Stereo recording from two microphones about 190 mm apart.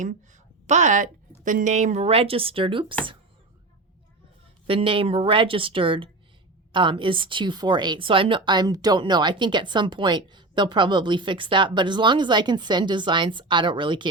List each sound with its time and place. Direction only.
0.7 s a woman's voice: 40° right (ahead or behind)
4.6 s a woman's voice: 30° right (ahead or behind)